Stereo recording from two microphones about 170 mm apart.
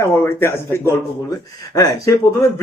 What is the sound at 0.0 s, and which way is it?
A man's voice, 15° left (ahead or behind).